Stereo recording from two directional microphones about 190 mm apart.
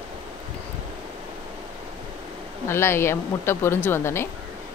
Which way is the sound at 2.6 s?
15° left (ahead or behind).